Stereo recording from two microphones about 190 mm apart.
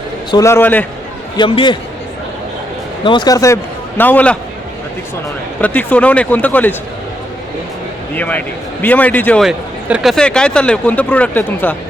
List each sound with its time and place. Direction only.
0.3 s a man's voice: 15° left (ahead or behind)
1.4 s speech: 25° left (ahead or behind)
3.0 s a man's voice: 25° left (ahead or behind); by 4.4 s 10° left (ahead or behind)
5.5 s a man's voice: 10° left (ahead or behind)
8.1 s a man's voice: 10° left (ahead or behind)